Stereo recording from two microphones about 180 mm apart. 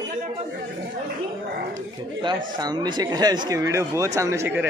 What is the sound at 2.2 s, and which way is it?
Speech, 25° right (ahead or behind).